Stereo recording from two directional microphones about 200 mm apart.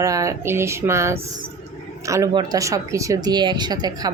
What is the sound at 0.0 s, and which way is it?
Speech, 15° right (ahead or behind).